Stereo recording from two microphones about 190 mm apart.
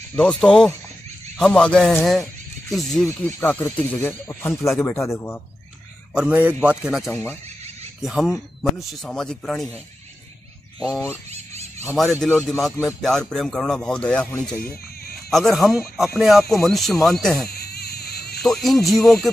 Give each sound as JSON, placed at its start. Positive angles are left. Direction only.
{"t": 0.1, "sound": "speech", "side_deg": 5}
{"t": 3.1, "sound": "speech", "side_deg": 15}
{"t": 6.1, "sound": "speech", "side_deg": -10}
{"t": 12.0, "sound": "speech", "side_deg": 0}
{"t": 14.6, "sound": "a sound", "side_deg": 55}
{"t": 15.5, "sound": "speech", "side_deg": 0}
{"t": 17.5, "sound": "frog", "side_deg": 55}
{"t": 18.4, "sound": "speech", "side_deg": 0}